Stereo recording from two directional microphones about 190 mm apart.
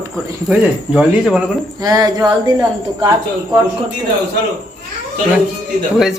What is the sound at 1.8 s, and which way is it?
A woman's voice, 20° right (ahead or behind).